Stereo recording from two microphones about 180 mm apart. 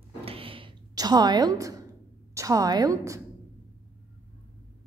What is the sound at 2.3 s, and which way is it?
Speech, 20° right (ahead or behind).